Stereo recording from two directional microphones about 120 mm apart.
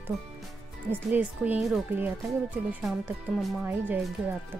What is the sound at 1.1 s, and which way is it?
Speech, 15° right (ahead or behind).